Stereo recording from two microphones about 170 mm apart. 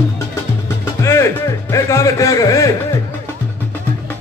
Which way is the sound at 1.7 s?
20° left (ahead or behind).